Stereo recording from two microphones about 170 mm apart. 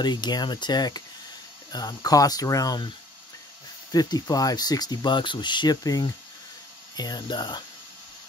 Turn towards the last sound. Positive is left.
turn(degrees=25)  # may be behind; listen again after turning